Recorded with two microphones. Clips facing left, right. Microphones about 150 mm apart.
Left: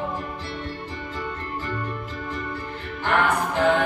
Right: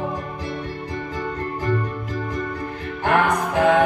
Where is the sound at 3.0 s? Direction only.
40° right (ahead or behind).